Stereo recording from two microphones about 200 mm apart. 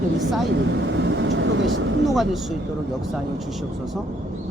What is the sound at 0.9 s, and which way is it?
Vehicle, 65° right (ahead or behind).